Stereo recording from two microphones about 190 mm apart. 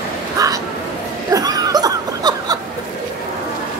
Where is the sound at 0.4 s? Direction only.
20° right (ahead or behind).